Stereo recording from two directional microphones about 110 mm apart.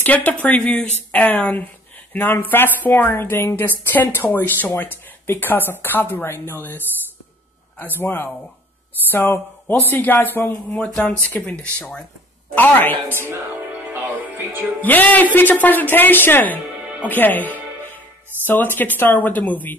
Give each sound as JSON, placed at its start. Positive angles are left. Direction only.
{"t": 0.0, "sound": "a man's voice", "side_deg": 15}
{"t": 7.8, "sound": "a man's voice", "side_deg": 20}
{"t": 13.1, "sound": "music", "side_deg": -20}
{"t": 14.8, "sound": "a man's voice", "side_deg": 15}